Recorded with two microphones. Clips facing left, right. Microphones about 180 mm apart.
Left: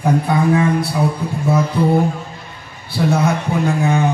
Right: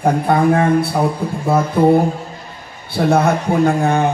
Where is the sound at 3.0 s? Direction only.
55° right (ahead or behind).